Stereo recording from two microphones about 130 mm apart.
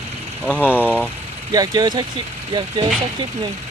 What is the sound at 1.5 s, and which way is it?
Speech, 30° right (ahead or behind).